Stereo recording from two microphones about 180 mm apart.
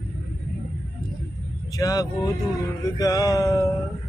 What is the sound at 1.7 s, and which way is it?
Mantra, 20° left (ahead or behind).